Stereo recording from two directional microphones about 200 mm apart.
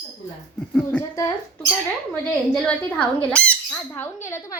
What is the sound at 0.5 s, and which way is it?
Speech, 5° left (ahead or behind).